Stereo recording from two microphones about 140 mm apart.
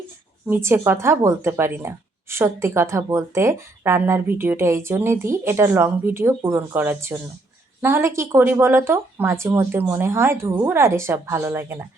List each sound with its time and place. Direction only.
0.4 s speech: 20° right (ahead or behind)